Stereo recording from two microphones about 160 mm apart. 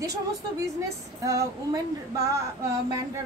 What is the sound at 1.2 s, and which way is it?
Speech, 20° right (ahead or behind).